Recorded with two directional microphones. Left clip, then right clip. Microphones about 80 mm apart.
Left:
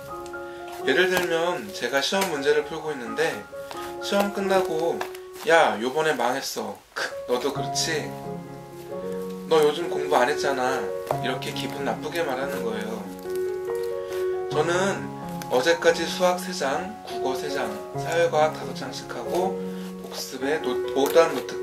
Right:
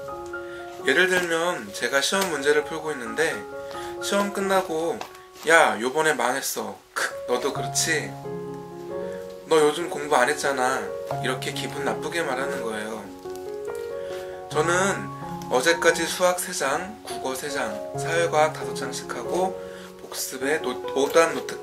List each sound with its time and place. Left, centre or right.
0.8 s speech: right
9.5 s speech: right
14.5 s speech: right
20.3 s speech: right